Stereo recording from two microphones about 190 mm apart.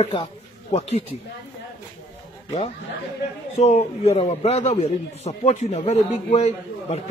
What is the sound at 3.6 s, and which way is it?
A man's voice, 35° left (ahead or behind).